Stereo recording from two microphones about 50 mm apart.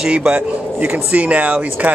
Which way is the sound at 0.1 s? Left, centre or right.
Right.